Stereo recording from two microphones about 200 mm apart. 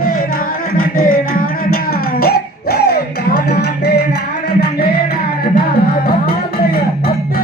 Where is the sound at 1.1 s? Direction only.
45° left (ahead or behind).